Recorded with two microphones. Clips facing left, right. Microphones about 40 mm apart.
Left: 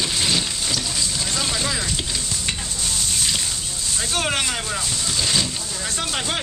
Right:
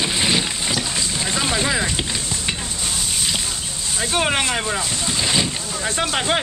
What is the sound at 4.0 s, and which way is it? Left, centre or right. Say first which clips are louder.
Speech: right 4 dB; centre.